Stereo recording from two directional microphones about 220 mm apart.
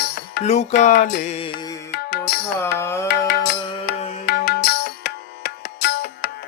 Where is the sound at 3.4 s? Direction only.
45° left (ahead or behind).